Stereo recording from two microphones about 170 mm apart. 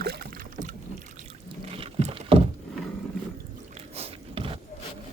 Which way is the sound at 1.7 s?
35° right (ahead or behind).